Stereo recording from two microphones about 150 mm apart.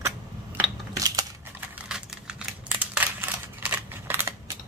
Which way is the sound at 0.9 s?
25° right (ahead or behind).